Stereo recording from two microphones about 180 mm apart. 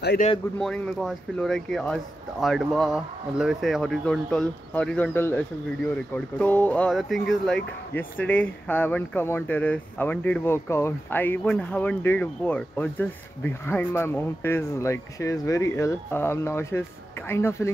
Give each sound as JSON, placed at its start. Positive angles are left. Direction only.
{"t": 0.6, "sound": "speech", "side_deg": 5}